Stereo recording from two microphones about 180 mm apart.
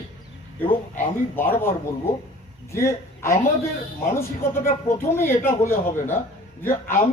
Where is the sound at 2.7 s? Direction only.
15° left (ahead or behind).